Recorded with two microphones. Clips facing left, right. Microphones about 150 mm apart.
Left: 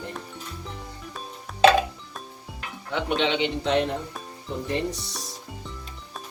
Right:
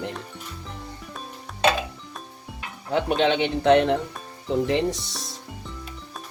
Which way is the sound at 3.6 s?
65° right (ahead or behind).